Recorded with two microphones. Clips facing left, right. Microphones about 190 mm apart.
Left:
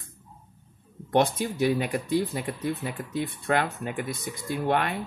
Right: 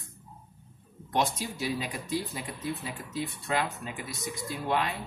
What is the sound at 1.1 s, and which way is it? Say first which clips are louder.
Speech: left 6 dB; 55° left (ahead or behind).